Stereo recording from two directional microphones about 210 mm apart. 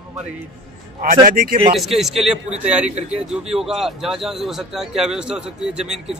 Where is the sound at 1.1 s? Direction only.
45° right (ahead or behind).